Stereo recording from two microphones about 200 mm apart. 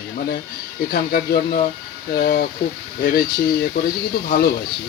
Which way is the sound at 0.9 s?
45° left (ahead or behind).